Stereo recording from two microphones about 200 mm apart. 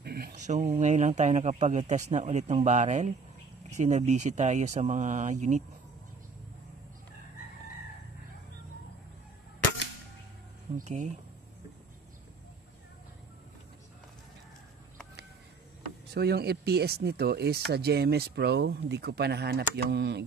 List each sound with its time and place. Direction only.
0.0 s speech: 50° right (ahead or behind)
10.8 s speech: 35° right (ahead or behind)
16.1 s speech: 55° right (ahead or behind)